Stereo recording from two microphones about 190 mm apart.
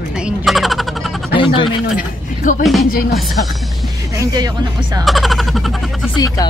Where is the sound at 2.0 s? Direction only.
45° left (ahead or behind).